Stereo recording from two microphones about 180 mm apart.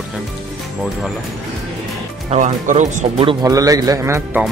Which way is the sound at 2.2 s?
40° right (ahead or behind).